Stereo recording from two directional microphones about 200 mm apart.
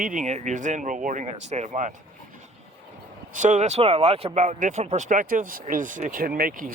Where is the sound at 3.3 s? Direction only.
40° right (ahead or behind).